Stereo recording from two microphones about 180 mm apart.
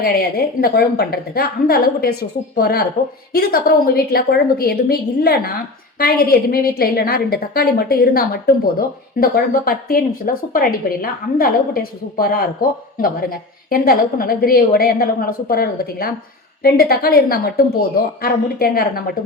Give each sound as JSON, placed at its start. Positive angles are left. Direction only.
{"t": 0.0, "sound": "a woman's voice", "side_deg": 60}